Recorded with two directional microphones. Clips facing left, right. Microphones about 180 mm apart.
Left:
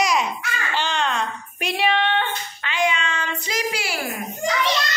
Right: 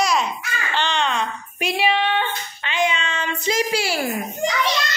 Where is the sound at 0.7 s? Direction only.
5° left (ahead or behind).